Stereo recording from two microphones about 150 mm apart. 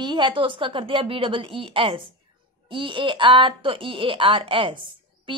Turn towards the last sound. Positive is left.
turn(degrees=-35)  # may be behind; listen again after turning